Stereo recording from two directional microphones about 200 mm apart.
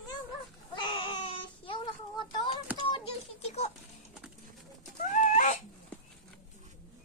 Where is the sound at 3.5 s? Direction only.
35° left (ahead or behind).